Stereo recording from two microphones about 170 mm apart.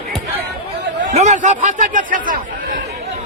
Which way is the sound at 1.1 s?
40° right (ahead or behind).